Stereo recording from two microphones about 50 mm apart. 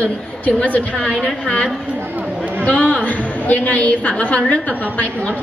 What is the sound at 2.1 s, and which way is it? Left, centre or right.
Chatter, right.